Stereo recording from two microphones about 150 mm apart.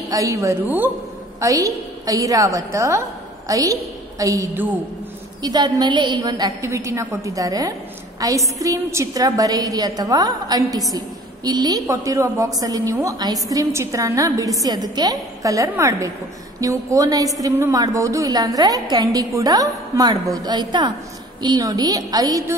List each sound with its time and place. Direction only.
0.1 s a woman's voice: 20° right (ahead or behind)